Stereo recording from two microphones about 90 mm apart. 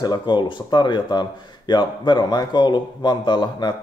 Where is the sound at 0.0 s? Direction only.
55° left (ahead or behind).